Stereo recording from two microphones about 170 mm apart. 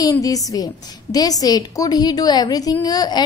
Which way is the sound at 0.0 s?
20° left (ahead or behind).